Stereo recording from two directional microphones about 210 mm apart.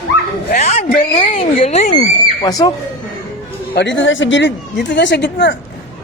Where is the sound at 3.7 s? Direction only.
60° left (ahead or behind).